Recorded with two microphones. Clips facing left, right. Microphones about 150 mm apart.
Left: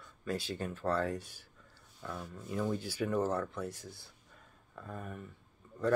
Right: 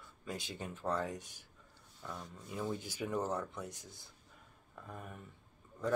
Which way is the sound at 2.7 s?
15° right (ahead or behind).